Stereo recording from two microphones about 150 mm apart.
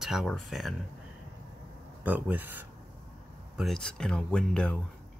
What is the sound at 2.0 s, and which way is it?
Speech, 10° right (ahead or behind).